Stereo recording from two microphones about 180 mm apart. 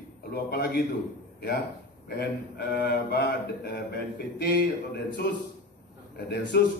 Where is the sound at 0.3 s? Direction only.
60° left (ahead or behind).